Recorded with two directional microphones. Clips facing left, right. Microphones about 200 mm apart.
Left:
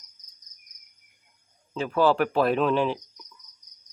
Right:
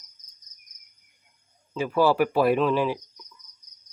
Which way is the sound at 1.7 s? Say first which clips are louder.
Even; 5° right (ahead or behind).